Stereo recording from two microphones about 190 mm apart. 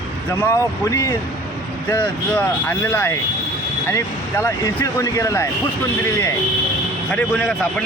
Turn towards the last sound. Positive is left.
turn(degrees=5)  # may be behind; listen again after turning